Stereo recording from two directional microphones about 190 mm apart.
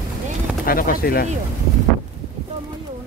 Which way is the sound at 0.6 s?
50° left (ahead or behind).